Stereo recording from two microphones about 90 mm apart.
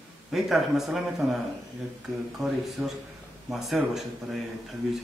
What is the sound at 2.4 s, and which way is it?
A man's voice, centre (ahead or behind).